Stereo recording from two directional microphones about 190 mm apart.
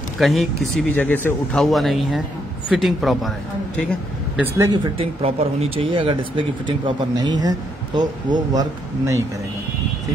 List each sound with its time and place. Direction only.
0.2 s speech: centre (ahead or behind)
4.4 s speech: 15° right (ahead or behind)
4.9 s speech: 30° right (ahead or behind)